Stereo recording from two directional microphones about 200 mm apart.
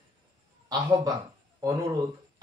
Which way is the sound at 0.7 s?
20° right (ahead or behind).